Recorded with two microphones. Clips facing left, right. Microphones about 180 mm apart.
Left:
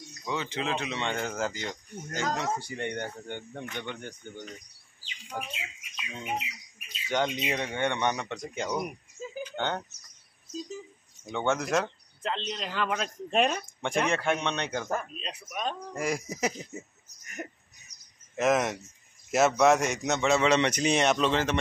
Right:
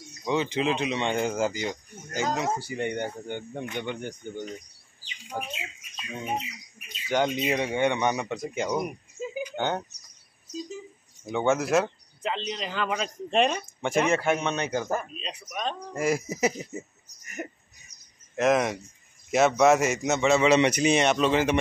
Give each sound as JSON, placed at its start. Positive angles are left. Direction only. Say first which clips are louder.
{"t": 0.2, "sound": "speech", "louder": "right 7 dB", "side_deg": -20}
{"t": 5.3, "sound": "speech", "louder": "right 3 dB", "side_deg": -10}
{"t": 7.1, "sound": "speech", "louder": "right 4 dB", "side_deg": -10}
{"t": 11.2, "sound": "speech", "louder": "right 4 dB", "side_deg": -5}